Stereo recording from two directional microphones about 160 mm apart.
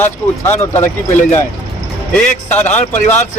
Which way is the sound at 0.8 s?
50° left (ahead or behind).